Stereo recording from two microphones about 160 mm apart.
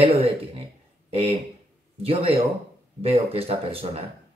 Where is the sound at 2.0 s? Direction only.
35° right (ahead or behind).